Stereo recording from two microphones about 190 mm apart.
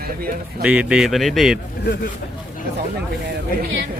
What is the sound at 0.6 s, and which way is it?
Speech, 5° right (ahead or behind).